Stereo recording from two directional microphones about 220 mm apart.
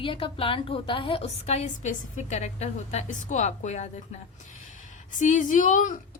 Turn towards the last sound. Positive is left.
turn(degrees=35)  # may be behind; listen again after turning